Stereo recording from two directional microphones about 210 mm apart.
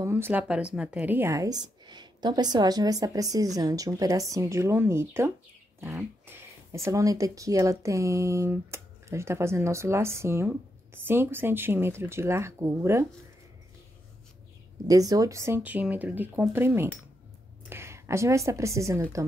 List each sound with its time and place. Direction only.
0.0 s speech: 10° right (ahead or behind)
14.9 s a woman's voice: 15° right (ahead or behind)